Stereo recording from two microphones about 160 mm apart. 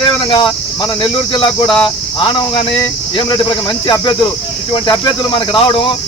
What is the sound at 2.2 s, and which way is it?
Speech, 30° left (ahead or behind).